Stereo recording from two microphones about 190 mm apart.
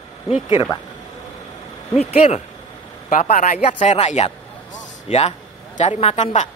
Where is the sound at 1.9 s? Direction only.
35° left (ahead or behind).